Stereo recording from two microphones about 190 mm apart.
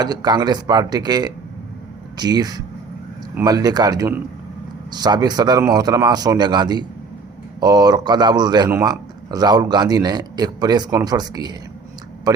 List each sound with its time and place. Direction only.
0.0 s a man's voice: 20° right (ahead or behind)